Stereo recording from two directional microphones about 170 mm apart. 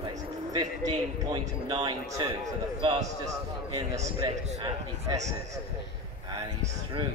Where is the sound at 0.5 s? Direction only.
20° right (ahead or behind).